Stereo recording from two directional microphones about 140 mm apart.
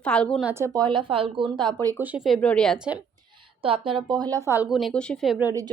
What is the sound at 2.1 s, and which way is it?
Speech, centre (ahead or behind).